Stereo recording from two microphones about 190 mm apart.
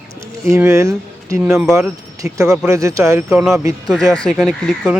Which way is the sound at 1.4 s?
5° right (ahead or behind).